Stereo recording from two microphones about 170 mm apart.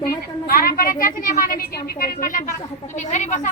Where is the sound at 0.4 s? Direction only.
60° left (ahead or behind).